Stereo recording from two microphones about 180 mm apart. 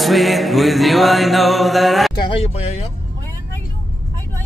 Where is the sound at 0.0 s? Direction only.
Centre (ahead or behind).